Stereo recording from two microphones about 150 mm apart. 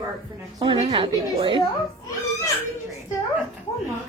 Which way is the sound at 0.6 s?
40° right (ahead or behind).